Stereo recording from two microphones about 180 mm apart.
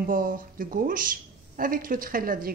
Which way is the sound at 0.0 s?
50° right (ahead or behind).